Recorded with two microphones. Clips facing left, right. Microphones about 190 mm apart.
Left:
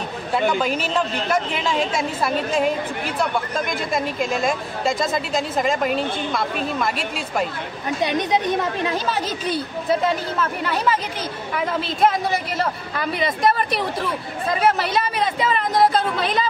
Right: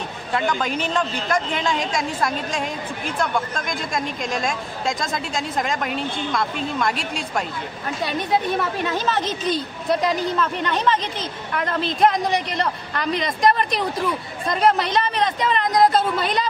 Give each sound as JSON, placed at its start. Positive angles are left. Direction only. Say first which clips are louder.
{"t": 0.5, "sound": "speech", "louder": "left 2 dB", "side_deg": 5}
{"t": 3.9, "sound": "a woman's voice", "louder": "left 3 dB", "side_deg": 5}
{"t": 8.0, "sound": "a woman's voice", "louder": "left 2 dB", "side_deg": 20}